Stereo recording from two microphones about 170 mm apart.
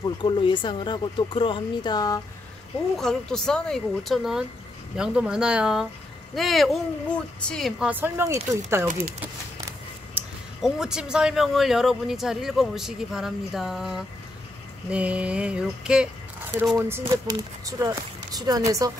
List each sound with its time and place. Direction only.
0.0 s speech: 30° left (ahead or behind)
3.0 s speech: 5° left (ahead or behind)
7.9 s a sound: 15° right (ahead or behind)
10.1 s speech: 5° right (ahead or behind)
14.9 s a sound: 5° right (ahead or behind)
16.5 s speech: 10° right (ahead or behind)